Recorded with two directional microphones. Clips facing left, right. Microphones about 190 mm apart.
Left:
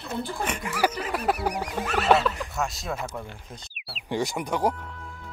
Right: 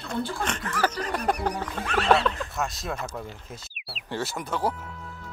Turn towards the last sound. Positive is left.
turn(degrees=15)  # may be behind; listen again after turning